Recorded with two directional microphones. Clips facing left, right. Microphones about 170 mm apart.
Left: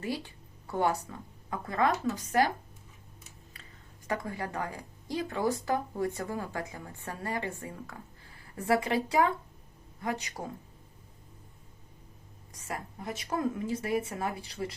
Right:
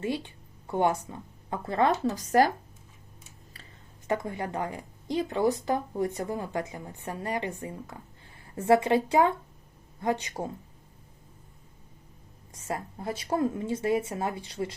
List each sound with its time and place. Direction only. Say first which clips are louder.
0.0 s speech: right 4 dB; 20° right (ahead or behind); by 2.5 s 40° right (ahead or behind)
3.5 s speech: right 2 dB; 25° right (ahead or behind)
12.5 s speech: right 5 dB; 25° right (ahead or behind)